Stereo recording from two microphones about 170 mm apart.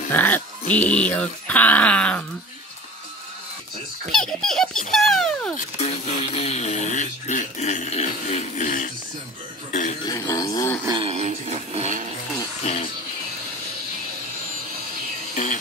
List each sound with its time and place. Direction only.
0.1 s speech: 10° left (ahead or behind)
4.1 s speech: 5° left (ahead or behind)
5.1 s a sound: 5° left (ahead or behind)
5.8 s speech: 40° left (ahead or behind)
9.7 s cough: 50° left (ahead or behind)
10.0 s a sound: 20° left (ahead or behind)
10.9 s vehicle: 35° right (ahead or behind)